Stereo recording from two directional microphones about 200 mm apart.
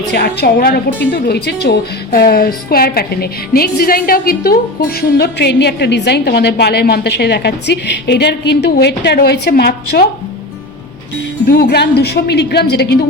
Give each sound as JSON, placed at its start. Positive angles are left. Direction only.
{"t": 0.1, "sound": "a woman's voice", "side_deg": 55}
{"t": 11.4, "sound": "a woman's voice", "side_deg": 50}